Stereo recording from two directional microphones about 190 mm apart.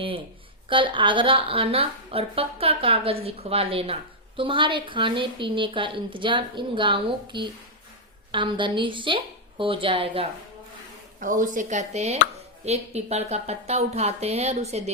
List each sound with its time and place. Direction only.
0.7 s a woman's voice: 25° right (ahead or behind)
11.2 s speech: 45° right (ahead or behind)